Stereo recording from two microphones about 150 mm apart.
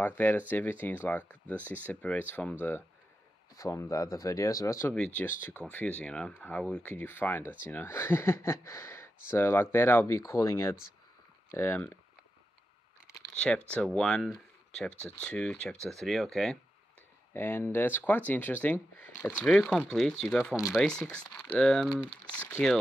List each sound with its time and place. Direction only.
0.0 s speech: 10° left (ahead or behind)
3.5 s speech: 20° left (ahead or behind)
4.9 s speech: 10° left (ahead or behind)
13.4 s speech: 5° left (ahead or behind)
17.3 s speech: 15° left (ahead or behind)